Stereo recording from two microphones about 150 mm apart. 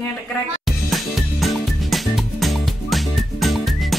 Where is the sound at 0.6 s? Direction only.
Centre (ahead or behind).